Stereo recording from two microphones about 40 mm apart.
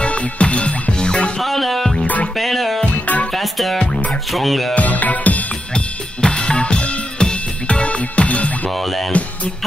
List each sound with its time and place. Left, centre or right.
0.0 s music: left
1.4 s music: centre
2.8 s music: left
3.3 s music: centre
4.7 s music: left
5.8 s drum kit: left
7.6 s music: left
8.7 s music: centre